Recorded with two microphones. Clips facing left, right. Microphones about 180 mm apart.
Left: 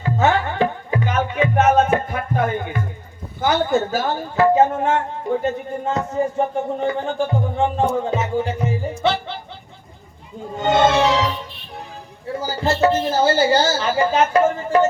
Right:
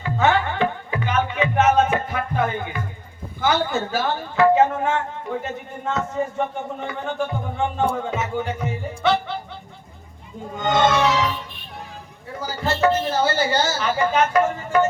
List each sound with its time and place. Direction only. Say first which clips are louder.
0.0 s music: left 1 dB; 40° left (ahead or behind)
3.4 s speech: left 3 dB; 45° left (ahead or behind)
8.0 s music: left 4 dB; 30° left (ahead or behind)
10.6 s music: left 3 dB; 30° left (ahead or behind)
12.4 s a sound: left 3 dB; 30° left (ahead or behind)